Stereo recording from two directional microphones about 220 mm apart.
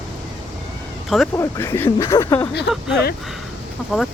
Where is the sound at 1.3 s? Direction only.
10° left (ahead or behind).